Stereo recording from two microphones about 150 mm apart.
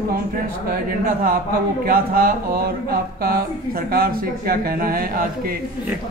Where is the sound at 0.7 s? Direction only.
70° right (ahead or behind).